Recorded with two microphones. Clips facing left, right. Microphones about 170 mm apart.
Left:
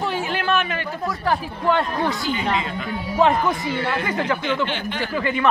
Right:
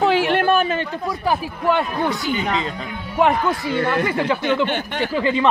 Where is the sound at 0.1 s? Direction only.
80° right.